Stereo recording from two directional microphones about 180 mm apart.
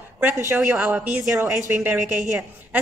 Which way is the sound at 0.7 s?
5° right (ahead or behind).